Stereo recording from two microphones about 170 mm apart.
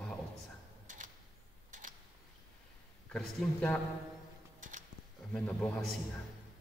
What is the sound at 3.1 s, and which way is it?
Speech, 10° left (ahead or behind).